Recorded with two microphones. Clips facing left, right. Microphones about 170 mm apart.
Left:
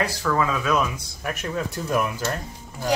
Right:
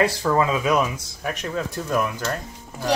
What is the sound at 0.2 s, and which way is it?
Speech, 30° right (ahead or behind).